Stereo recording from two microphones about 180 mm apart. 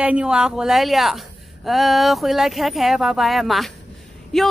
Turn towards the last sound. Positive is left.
turn(degrees=0)  # may be behind; listen again after turning